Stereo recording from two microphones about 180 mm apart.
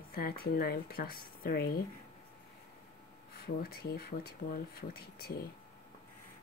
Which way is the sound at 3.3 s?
60° left (ahead or behind).